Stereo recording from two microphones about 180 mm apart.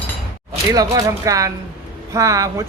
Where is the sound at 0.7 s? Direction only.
20° right (ahead or behind).